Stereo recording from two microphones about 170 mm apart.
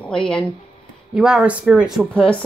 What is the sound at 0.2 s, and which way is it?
A woman's voice, 5° left (ahead or behind).